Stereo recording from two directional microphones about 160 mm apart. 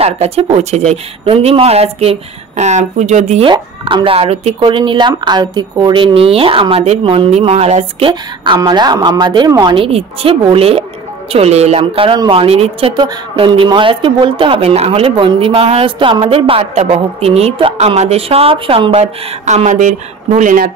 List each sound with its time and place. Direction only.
0.0 s speech: 40° right (ahead or behind)
8.1 s a woman's voice: 25° right (ahead or behind); by 20.7 s 55° right (ahead or behind)